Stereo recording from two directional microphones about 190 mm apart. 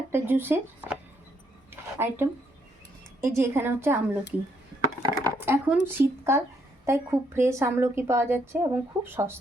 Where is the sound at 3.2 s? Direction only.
15° right (ahead or behind).